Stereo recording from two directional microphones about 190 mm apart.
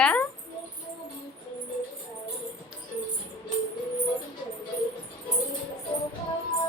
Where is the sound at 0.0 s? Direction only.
10° left (ahead or behind).